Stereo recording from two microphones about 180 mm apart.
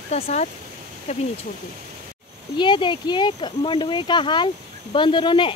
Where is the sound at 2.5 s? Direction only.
25° left (ahead or behind).